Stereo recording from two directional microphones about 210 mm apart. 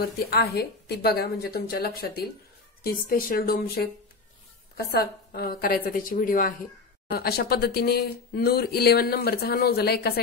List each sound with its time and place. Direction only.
0.0 s speech: 50° left (ahead or behind)